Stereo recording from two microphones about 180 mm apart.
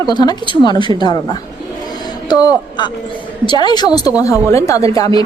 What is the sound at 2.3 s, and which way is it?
A woman's voice, 20° left (ahead or behind).